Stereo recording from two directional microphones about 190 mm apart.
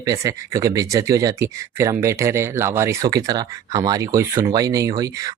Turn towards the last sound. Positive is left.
turn(degrees=-20)  # may be behind; listen again after turning